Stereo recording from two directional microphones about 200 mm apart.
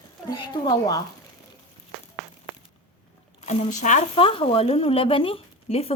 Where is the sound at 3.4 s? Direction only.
35° left (ahead or behind).